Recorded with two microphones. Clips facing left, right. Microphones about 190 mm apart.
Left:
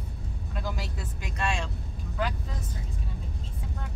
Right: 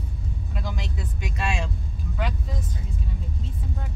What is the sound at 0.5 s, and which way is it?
Vehicle, 5° left (ahead or behind).